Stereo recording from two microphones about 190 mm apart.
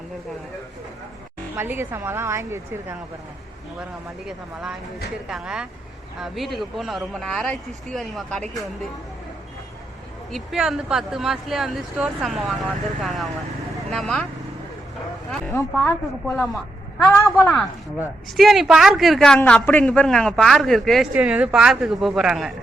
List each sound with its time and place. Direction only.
1.5 s a woman's voice: 10° right (ahead or behind)
4.3 s speech: centre (ahead or behind)
10.3 s speech: centre (ahead or behind)
16.2 s speech: centre (ahead or behind)
17.1 s a man's voice: 15° left (ahead or behind)
18.3 s speech: centre (ahead or behind)